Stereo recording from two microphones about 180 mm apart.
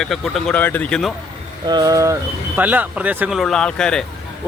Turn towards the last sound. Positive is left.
turn(degrees=5)  # may be behind; listen again after turning